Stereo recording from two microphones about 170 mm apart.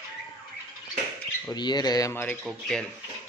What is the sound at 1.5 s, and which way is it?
Speech, 25° left (ahead or behind).